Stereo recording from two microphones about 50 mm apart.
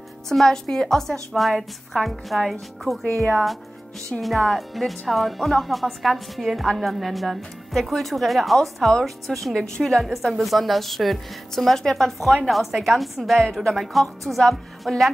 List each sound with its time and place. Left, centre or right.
0.3 s a woman's voice: centre